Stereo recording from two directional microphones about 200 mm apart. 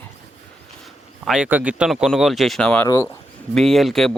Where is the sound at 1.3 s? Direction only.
5° right (ahead or behind).